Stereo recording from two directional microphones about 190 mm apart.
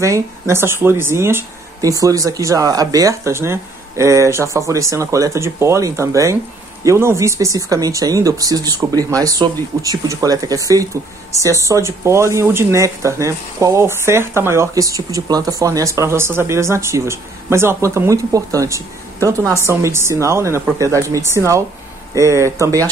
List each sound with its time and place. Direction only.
0.0 s speech: 15° right (ahead or behind)